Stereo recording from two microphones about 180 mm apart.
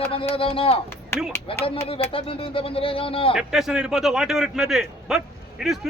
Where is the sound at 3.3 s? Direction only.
Centre (ahead or behind).